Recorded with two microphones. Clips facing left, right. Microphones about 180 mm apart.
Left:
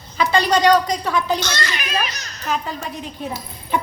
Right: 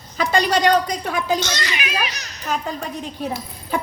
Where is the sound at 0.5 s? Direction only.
50° right (ahead or behind).